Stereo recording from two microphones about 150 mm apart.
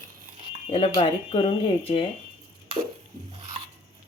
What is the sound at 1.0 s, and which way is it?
Speech, 35° left (ahead or behind).